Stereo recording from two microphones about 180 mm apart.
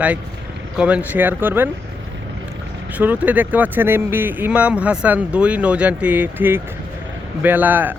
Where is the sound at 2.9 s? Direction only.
10° right (ahead or behind).